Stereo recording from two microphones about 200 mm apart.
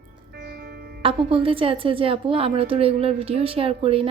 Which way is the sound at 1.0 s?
25° right (ahead or behind).